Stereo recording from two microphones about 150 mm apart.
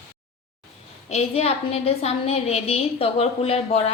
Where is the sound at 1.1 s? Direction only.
45° left (ahead or behind).